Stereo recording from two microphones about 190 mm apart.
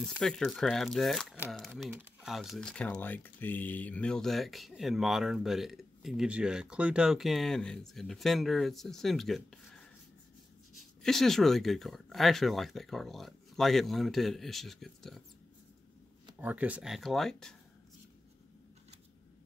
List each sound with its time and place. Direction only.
0.0 s speech: 5° left (ahead or behind)
11.0 s speech: centre (ahead or behind)
16.3 s speech: 10° right (ahead or behind)